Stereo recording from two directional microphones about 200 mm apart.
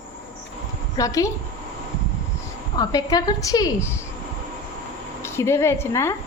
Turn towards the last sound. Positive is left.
turn(degrees=15)  # may be behind; listen again after turning